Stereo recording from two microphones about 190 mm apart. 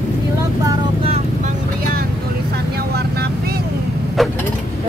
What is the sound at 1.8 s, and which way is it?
Vehicle, 50° right (ahead or behind).